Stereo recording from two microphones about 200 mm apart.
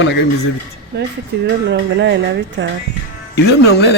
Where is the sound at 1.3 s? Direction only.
55° right (ahead or behind).